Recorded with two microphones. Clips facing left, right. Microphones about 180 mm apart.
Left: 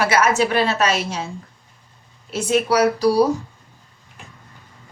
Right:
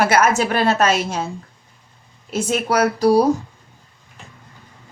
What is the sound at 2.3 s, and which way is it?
A woman's voice, 45° right (ahead or behind).